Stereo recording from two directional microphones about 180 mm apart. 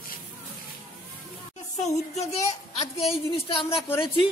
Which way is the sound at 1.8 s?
35° left (ahead or behind).